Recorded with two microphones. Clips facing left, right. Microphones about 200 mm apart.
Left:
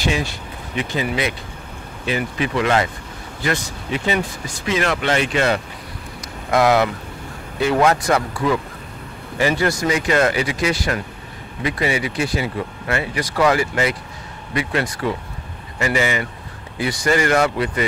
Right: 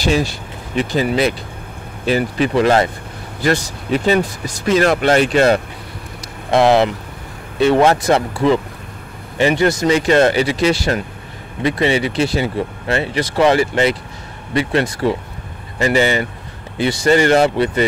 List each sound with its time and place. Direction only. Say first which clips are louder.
0.0 s speech: right 5 dB; 35° right (ahead or behind)
6.5 s speech: right 3 dB; 25° right (ahead or behind)